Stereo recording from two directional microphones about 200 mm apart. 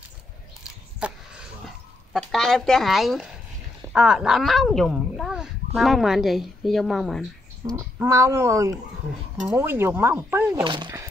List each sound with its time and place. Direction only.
1.0 s a sound: 5° right (ahead or behind)
2.1 s a woman's voice: centre (ahead or behind)
7.7 s speech: 15° right (ahead or behind)
10.6 s speech: 25° right (ahead or behind)